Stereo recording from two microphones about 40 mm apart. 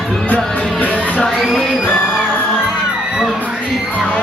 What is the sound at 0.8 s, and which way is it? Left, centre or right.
Music, left.